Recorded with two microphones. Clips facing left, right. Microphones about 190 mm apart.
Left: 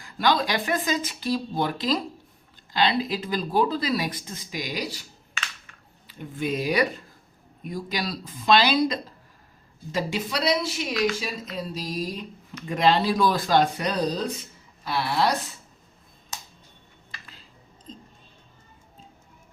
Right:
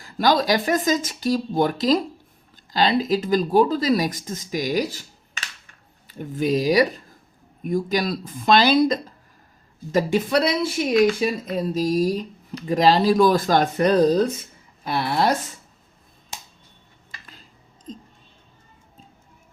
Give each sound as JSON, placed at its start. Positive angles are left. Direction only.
{"t": 0.0, "sound": "speech", "side_deg": -40}
{"t": 6.1, "sound": "speech", "side_deg": -40}
{"t": 7.6, "sound": "speech", "side_deg": -50}